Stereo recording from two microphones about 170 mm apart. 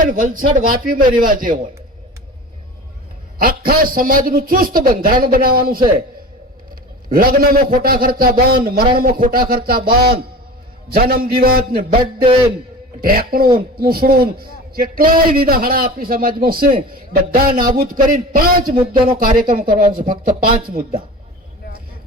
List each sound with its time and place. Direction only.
0.0 s a man's voice: 50° right (ahead or behind)
3.4 s a man's voice: 60° right (ahead or behind)
7.1 s a man's voice: 60° right (ahead or behind)
11.9 s a sound: 30° right (ahead or behind)
13.0 s a man's voice: 60° right (ahead or behind)